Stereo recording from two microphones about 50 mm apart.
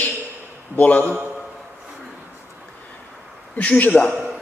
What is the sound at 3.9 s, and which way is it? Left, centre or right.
Speech, centre.